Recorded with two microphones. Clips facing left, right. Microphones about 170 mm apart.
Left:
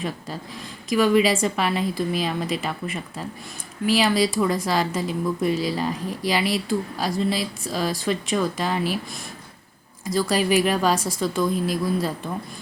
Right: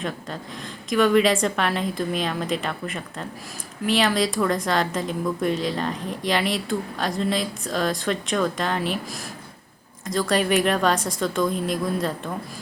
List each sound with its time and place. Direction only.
0.9 s speech: 5° left (ahead or behind)
10.1 s speech: 5° left (ahead or behind)